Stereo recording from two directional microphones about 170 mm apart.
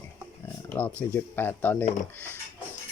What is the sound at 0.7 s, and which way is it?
Speech, 10° left (ahead or behind).